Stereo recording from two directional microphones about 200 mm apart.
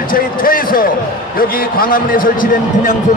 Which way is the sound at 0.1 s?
45° left (ahead or behind).